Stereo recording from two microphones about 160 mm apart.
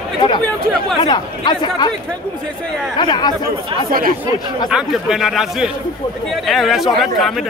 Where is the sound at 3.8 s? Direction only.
65° right (ahead or behind).